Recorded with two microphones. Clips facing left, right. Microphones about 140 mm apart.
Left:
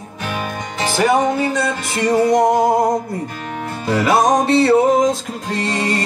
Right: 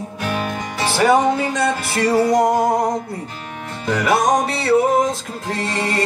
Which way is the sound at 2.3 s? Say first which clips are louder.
Left 2 dB; 5° right (ahead or behind).